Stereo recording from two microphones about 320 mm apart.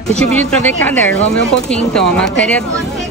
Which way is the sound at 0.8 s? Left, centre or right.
Centre.